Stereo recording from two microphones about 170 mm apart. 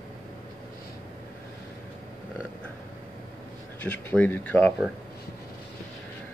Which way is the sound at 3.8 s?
10° left (ahead or behind).